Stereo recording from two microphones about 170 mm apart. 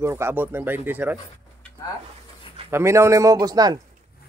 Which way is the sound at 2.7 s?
15° right (ahead or behind).